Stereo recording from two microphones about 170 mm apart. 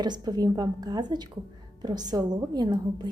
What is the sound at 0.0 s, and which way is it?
Speech, 25° right (ahead or behind).